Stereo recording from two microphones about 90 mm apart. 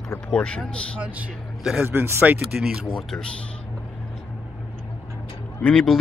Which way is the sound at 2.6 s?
5° right (ahead or behind).